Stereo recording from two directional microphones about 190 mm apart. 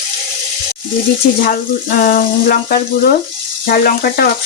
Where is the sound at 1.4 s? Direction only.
50° left (ahead or behind).